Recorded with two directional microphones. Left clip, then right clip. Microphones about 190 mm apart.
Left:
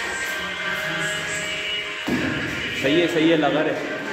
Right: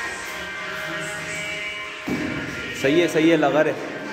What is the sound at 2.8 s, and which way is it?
Speech, 30° right (ahead or behind).